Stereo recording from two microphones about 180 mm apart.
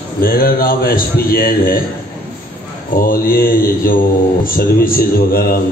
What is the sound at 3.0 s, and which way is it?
A man's voice, 55° left (ahead or behind).